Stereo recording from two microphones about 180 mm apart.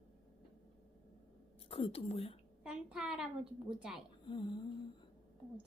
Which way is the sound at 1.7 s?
30° left (ahead or behind).